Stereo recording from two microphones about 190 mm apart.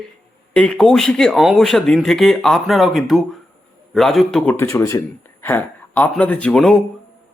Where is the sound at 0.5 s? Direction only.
5° left (ahead or behind).